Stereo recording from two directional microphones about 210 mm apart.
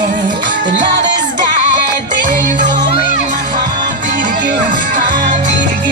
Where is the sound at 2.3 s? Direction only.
40° right (ahead or behind).